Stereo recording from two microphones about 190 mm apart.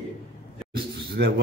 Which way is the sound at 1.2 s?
60° right (ahead or behind).